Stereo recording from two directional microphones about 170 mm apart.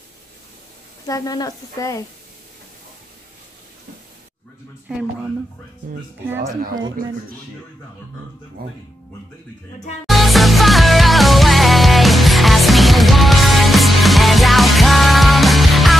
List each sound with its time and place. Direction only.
1.0 s speech: 20° left (ahead or behind)
6.2 s speech: 10° right (ahead or behind)
6.5 s speech: 50° right (ahead or behind)
10.0 s music: centre (ahead or behind)